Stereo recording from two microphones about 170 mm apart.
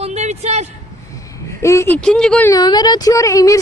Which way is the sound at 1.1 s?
20° left (ahead or behind).